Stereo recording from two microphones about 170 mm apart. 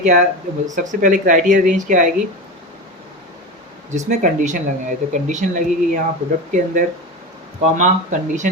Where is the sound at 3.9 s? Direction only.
45° right (ahead or behind).